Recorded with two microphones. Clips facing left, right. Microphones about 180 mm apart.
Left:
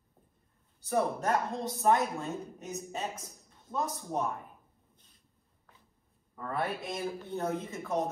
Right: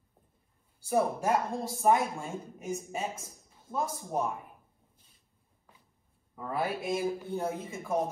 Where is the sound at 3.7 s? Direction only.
25° right (ahead or behind).